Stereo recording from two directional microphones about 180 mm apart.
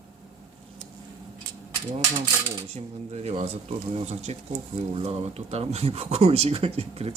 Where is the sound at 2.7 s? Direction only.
35° right (ahead or behind).